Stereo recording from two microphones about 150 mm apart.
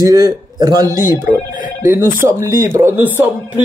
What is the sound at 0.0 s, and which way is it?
A man's voice, 25° right (ahead or behind).